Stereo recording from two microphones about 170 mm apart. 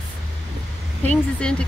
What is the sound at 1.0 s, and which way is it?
Speech, 5° left (ahead or behind).